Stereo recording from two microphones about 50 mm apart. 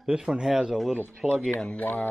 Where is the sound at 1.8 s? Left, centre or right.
Left.